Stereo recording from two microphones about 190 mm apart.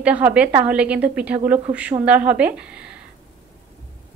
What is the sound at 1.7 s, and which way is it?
Speech, 40° right (ahead or behind).